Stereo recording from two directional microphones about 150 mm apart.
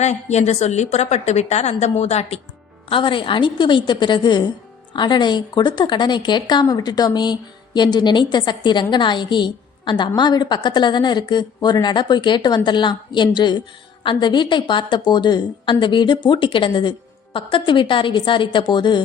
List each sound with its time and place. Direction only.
0.0 s a woman's voice: 50° left (ahead or behind)
2.9 s a woman's voice: 35° left (ahead or behind)